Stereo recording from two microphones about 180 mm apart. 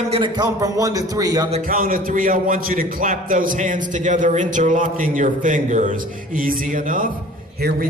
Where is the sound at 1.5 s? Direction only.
35° right (ahead or behind).